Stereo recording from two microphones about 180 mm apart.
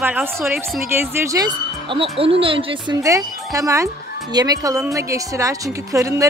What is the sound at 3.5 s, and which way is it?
A woman's voice, 20° right (ahead or behind).